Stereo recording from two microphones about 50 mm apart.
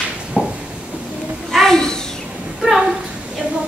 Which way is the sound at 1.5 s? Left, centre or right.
Centre.